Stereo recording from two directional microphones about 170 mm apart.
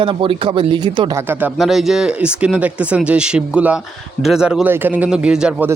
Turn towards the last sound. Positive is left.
turn(degrees=-5)  # may be behind; listen again after turning